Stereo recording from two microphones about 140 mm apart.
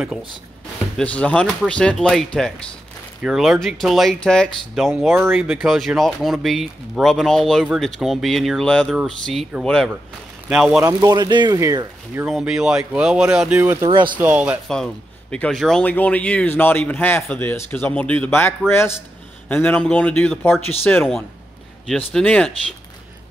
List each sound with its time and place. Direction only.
0.9 s speech: 10° left (ahead or behind)
5.1 s speech: 15° right (ahead or behind)
5.4 s speech: centre (ahead or behind)
10.8 s speech: 25° right (ahead or behind)
12.3 s speech: 5° right (ahead or behind)
13.8 s speech: 35° right (ahead or behind)
14.1 s speech: 10° right (ahead or behind)
15.3 s speech: 5° left (ahead or behind)